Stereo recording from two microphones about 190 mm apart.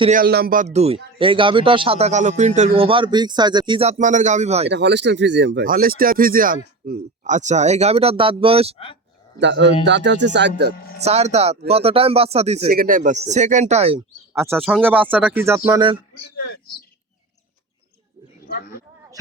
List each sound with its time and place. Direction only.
0.1 s a man's voice: 55° right (ahead or behind)
2.6 s a man's voice: 30° right (ahead or behind)
4.7 s speech: 65° right (ahead or behind)
5.6 s speech: 50° right (ahead or behind)
7.3 s speech: 40° right (ahead or behind)
9.4 s speech: 70° right (ahead or behind)
11.0 s speech: 35° right (ahead or behind)
12.6 s speech: 50° right (ahead or behind); by 14.0 s 30° right (ahead or behind)
14.3 s speech: 10° right (ahead or behind)